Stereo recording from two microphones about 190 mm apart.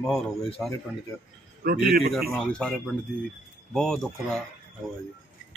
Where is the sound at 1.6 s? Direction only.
55° right (ahead or behind).